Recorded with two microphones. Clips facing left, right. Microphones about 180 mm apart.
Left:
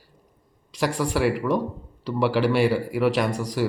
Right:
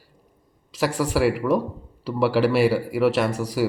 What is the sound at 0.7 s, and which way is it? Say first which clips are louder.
Speech: right 1 dB; 5° right (ahead or behind).